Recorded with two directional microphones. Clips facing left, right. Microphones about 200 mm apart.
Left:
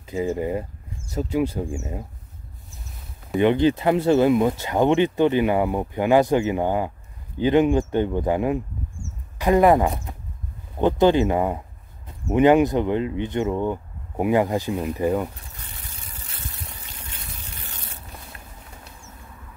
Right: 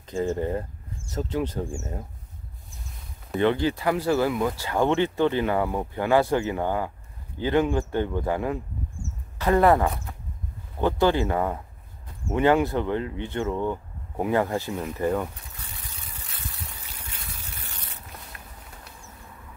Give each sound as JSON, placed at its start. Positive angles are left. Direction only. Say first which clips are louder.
{"t": 0.0, "sound": "speech", "louder": "left 2 dB", "side_deg": 10}
{"t": 3.3, "sound": "speech", "louder": "left 5 dB", "side_deg": 20}